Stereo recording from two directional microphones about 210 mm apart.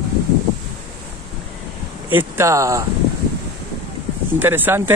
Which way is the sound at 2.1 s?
10° right (ahead or behind).